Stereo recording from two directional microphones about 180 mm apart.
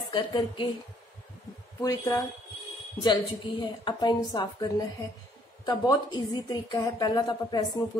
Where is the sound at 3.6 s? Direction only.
25° left (ahead or behind).